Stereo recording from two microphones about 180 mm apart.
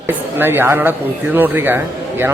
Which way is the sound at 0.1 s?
10° right (ahead or behind).